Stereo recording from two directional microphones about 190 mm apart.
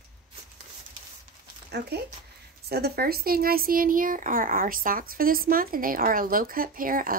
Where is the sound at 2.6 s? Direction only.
55° right (ahead or behind).